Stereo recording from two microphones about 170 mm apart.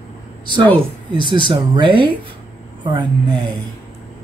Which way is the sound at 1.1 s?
30° right (ahead or behind).